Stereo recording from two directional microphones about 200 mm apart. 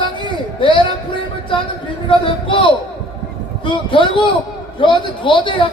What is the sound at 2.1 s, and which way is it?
A man's voice, 25° left (ahead or behind).